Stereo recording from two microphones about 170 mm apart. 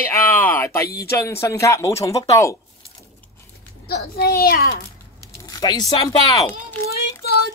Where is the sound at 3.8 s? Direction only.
65° left (ahead or behind).